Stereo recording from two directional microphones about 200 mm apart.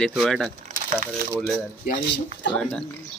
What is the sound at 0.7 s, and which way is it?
Crumpling, 40° right (ahead or behind).